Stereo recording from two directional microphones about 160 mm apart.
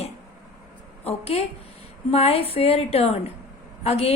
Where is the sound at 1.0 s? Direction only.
40° left (ahead or behind).